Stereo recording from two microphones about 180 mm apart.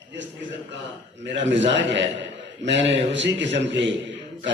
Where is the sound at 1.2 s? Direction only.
80° right.